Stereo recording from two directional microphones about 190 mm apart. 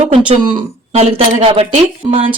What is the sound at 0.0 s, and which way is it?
Speech, 30° right (ahead or behind).